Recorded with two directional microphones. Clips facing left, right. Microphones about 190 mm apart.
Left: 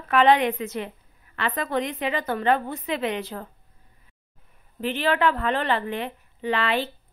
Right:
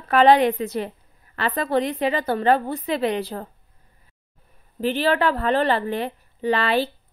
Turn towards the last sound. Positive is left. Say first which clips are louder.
# right 4 dB
turn(degrees=-35)  # may be behind; listen again after turning